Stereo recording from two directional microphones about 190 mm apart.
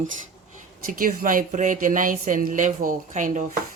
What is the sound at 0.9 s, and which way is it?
A woman's voice, 50° right (ahead or behind).